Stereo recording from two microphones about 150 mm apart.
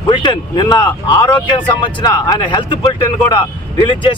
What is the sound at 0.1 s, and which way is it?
Speech, 30° left (ahead or behind).